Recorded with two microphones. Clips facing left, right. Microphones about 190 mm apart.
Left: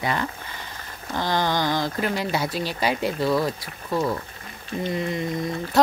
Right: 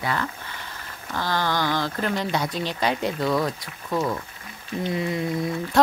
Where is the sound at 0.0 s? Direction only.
20° left (ahead or behind); by 3.5 s 5° left (ahead or behind).